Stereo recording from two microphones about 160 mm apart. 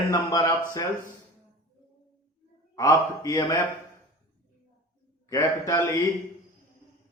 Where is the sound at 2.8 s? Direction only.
20° left (ahead or behind).